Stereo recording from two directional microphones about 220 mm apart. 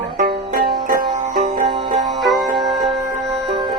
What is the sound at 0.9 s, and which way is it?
Music, 40° right (ahead or behind).